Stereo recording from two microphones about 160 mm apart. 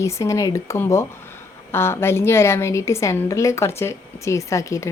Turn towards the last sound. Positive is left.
turn(degrees=20)  # may be behind; listen again after turning